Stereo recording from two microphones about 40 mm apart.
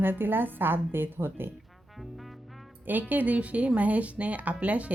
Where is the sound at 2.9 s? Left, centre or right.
Right.